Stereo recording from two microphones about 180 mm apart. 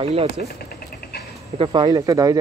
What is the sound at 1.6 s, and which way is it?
Speech, 25° right (ahead or behind).